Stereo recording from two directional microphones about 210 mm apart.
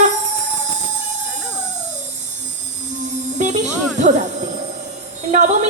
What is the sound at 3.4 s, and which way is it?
Music, 35° right (ahead or behind).